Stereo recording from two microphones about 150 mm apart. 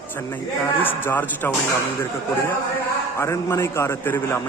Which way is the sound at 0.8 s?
15° left (ahead or behind).